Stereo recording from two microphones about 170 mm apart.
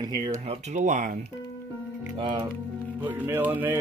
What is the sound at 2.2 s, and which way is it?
Speech, 25° right (ahead or behind).